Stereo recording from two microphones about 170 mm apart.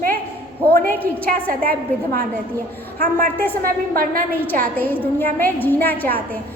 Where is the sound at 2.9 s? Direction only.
65° right (ahead or behind).